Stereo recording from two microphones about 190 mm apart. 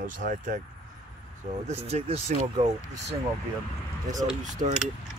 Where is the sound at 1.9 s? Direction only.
35° right (ahead or behind).